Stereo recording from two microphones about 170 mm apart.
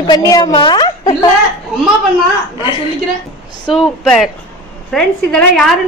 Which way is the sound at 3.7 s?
Centre (ahead or behind).